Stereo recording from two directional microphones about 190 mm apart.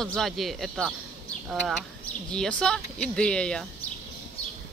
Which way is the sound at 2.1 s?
5° left (ahead or behind).